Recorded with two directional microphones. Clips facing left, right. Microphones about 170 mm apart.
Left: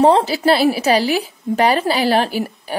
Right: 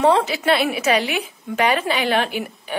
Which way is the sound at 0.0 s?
35° left (ahead or behind).